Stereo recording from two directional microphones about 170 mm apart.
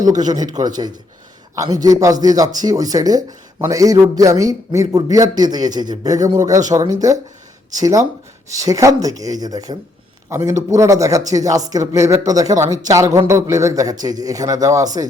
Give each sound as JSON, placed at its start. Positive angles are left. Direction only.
{"t": 0.0, "sound": "speech", "side_deg": -25}